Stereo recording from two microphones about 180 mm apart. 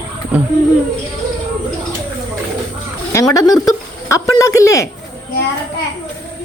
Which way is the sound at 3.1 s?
20° left (ahead or behind).